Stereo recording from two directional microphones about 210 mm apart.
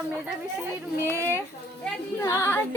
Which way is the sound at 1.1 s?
15° right (ahead or behind).